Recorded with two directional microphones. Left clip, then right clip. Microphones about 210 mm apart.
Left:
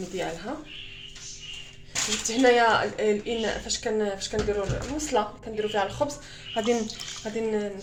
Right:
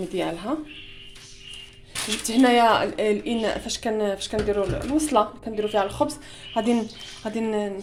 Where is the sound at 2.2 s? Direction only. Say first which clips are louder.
Right 2 dB; 45° right (ahead or behind).